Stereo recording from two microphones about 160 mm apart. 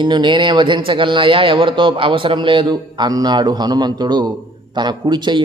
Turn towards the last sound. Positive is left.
turn(degrees=-30)  # may be behind; listen again after turning